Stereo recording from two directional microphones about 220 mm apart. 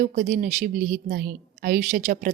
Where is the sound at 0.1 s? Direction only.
30° right (ahead or behind).